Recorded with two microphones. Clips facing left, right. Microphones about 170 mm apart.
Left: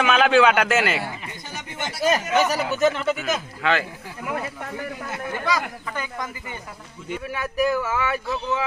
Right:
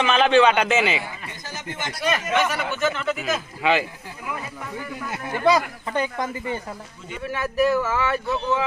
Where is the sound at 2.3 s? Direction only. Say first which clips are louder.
Left 3 dB; 40° left (ahead or behind).